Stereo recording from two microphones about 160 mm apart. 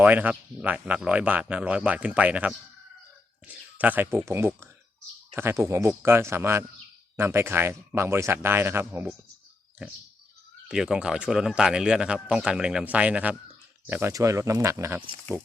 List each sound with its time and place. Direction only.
0.0 s speech: 10° right (ahead or behind)